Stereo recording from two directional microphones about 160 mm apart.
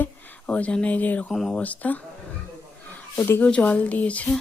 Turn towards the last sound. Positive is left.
turn(degrees=10)  # may be behind; listen again after turning